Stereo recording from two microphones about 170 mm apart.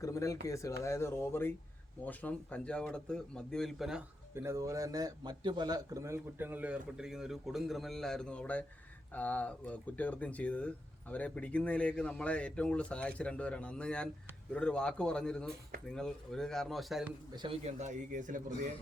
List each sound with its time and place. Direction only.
0.0 s a sound: 20° left (ahead or behind)
0.4 s speech: 20° left (ahead or behind); by 4.0 s centre (ahead or behind)
4.4 s speech: 15° right (ahead or behind); by 17.1 s centre (ahead or behind)
17.3 s a man's voice: 30° right (ahead or behind); by 18.7 s 50° right (ahead or behind)